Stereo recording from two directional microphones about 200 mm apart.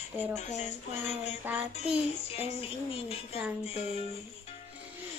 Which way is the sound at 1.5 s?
10° right (ahead or behind).